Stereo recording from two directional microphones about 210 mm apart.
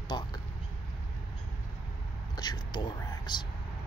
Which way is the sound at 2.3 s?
20° left (ahead or behind).